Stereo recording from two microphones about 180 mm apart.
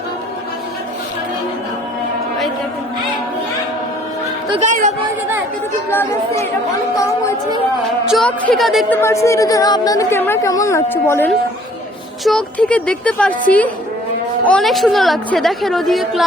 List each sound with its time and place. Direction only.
4.6 s speech: 45° right (ahead or behind)
5.9 s a woman's voice: 15° left (ahead or behind)
8.0 s a woman's voice: centre (ahead or behind)
8.9 s a woman's voice: 15° left (ahead or behind)
14.4 s a woman's voice: 5° left (ahead or behind)